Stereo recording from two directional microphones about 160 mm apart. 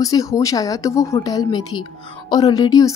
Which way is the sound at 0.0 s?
20° left (ahead or behind).